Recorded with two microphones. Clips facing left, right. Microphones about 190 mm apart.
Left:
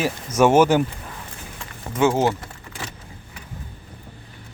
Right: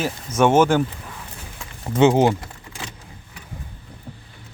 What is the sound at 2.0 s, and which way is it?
Speech, 20° right (ahead or behind).